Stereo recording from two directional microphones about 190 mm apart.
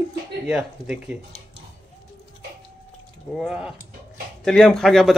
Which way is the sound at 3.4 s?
5° right (ahead or behind).